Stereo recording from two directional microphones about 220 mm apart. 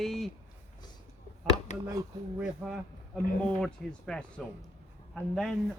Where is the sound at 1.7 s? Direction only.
35° left (ahead or behind).